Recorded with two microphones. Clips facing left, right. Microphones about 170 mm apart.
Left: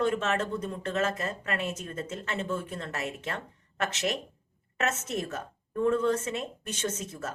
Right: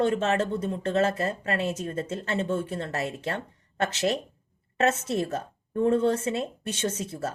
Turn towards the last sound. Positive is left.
turn(degrees=-30)  # may be behind; listen again after turning